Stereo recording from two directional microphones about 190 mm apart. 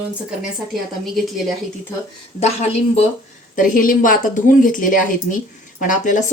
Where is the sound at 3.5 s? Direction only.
45° left (ahead or behind).